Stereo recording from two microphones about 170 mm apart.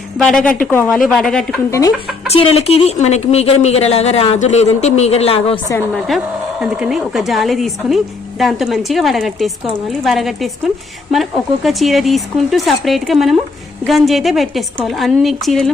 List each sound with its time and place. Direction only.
0.2 s speech: 5° left (ahead or behind)
2.3 s speech: 35° left (ahead or behind)
5.9 s speech: centre (ahead or behind)